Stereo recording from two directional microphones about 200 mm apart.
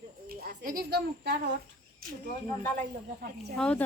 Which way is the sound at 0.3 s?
45° right (ahead or behind).